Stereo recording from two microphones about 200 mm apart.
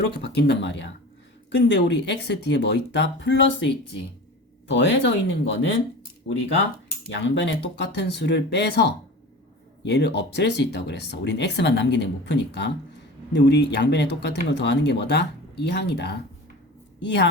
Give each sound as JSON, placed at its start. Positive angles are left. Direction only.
{"t": 0.2, "sound": "speech", "side_deg": 55}
{"t": 4.7, "sound": "speech", "side_deg": 65}
{"t": 7.1, "sound": "a woman's voice", "side_deg": 65}